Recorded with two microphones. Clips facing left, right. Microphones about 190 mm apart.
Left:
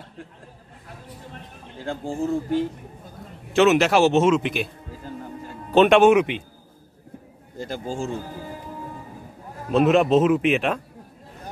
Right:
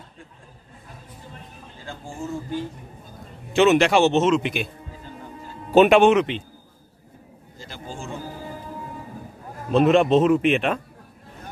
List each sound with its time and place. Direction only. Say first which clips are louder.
1.9 s speech: left 7 dB; 60° left (ahead or behind)
3.5 s speech: even; centre (ahead or behind)
5.7 s speech: even; 5° right (ahead or behind); by 6.4 s 10° left (ahead or behind)
7.5 s speech: left 8 dB; 50° left (ahead or behind)
9.7 s speech: right 1 dB; centre (ahead or behind)